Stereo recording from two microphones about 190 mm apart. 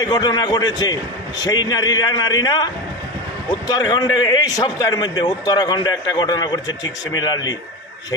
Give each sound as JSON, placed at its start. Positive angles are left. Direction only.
{"t": 0.0, "sound": "a man's voice", "side_deg": 20}